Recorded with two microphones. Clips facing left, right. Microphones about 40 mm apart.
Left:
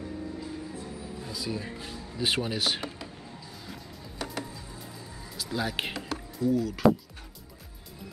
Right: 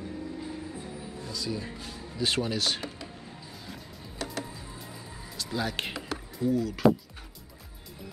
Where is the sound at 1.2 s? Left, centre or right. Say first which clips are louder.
Even; centre.